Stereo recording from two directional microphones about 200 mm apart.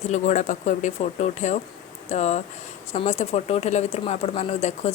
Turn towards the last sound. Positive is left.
turn(degrees=30)  # may be behind; listen again after turning